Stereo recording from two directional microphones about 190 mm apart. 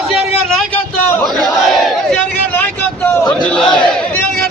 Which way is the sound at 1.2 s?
Centre (ahead or behind).